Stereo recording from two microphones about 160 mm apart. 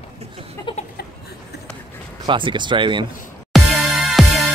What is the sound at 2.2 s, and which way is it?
Speech, 30° right (ahead or behind).